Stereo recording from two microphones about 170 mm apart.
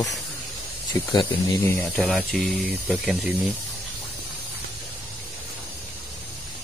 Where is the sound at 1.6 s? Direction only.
15° left (ahead or behind).